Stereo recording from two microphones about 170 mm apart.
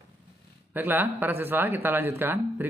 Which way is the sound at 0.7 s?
10° right (ahead or behind).